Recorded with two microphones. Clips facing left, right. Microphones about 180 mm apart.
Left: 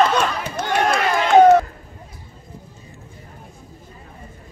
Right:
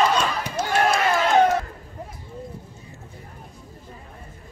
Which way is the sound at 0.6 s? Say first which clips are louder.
Left 2 dB; 55° left (ahead or behind).